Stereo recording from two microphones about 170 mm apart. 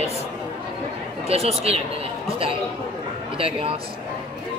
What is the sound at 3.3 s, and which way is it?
Speech, 35° right (ahead or behind).